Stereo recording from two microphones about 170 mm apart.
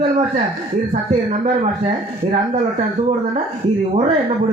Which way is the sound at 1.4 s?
45° right (ahead or behind).